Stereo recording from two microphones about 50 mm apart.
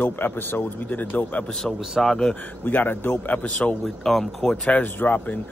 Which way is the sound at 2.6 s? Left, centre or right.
Left.